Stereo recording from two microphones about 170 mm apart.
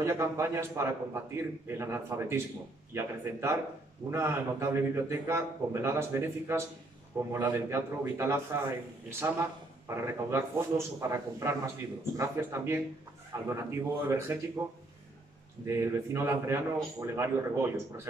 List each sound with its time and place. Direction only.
0.0 s a man's voice: 15° right (ahead or behind)
15.6 s a man's voice: 15° right (ahead or behind)